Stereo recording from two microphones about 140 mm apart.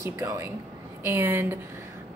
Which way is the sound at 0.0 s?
20° right (ahead or behind).